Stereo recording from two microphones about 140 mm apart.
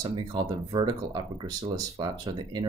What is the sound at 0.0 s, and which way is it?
Speech, 30° right (ahead or behind).